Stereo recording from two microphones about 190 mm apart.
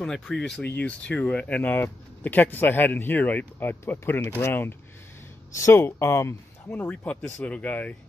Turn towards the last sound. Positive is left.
turn(degrees=10)  # may be behind; listen again after turning